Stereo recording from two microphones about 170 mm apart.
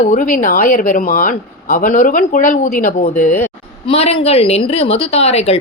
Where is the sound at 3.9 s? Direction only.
35° left (ahead or behind).